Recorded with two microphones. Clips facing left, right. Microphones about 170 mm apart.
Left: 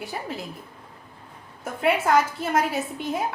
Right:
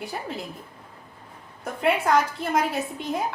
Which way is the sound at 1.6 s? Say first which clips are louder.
Even; centre (ahead or behind).